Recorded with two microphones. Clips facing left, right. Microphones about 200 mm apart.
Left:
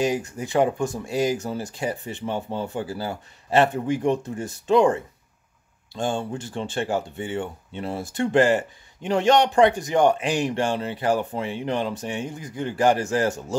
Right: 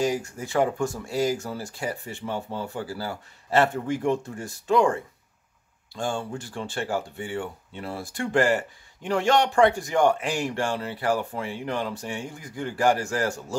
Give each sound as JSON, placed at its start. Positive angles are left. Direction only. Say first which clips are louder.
{"t": 0.0, "sound": "speech", "louder": "left 2 dB", "side_deg": 20}